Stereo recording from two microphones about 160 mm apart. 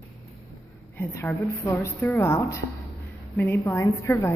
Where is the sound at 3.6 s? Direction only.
15° left (ahead or behind).